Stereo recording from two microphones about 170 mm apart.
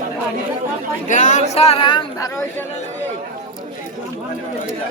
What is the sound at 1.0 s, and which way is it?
Speech, 45° left (ahead or behind).